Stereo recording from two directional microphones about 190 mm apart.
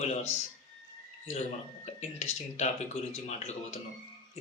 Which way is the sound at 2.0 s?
35° left (ahead or behind).